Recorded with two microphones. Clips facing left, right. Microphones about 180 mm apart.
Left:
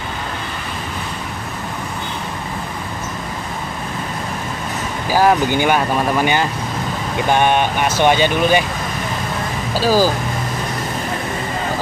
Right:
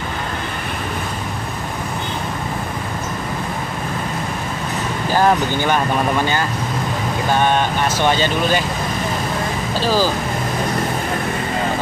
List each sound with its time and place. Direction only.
5.1 s speech: 10° left (ahead or behind)
7.2 s speech: 15° left (ahead or behind)
9.8 s speech: 10° left (ahead or behind)